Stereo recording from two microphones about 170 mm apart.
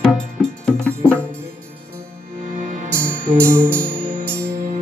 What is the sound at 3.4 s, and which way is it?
Music, 15° right (ahead or behind).